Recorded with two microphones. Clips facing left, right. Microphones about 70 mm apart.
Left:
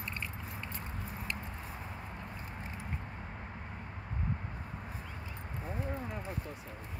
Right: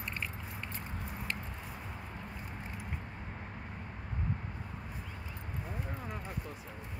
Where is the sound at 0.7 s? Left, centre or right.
Centre.